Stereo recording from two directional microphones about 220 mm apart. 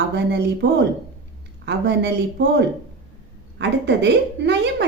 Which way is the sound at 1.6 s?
50° right (ahead or behind).